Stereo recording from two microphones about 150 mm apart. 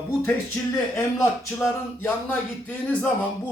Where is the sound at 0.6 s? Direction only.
15° left (ahead or behind).